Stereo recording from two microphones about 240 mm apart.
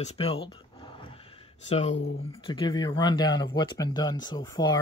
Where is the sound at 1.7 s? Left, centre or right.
Left.